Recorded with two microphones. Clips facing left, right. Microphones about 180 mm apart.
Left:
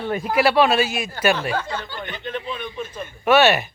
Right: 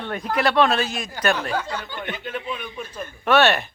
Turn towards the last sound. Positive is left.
turn(degrees=5)  # may be behind; listen again after turning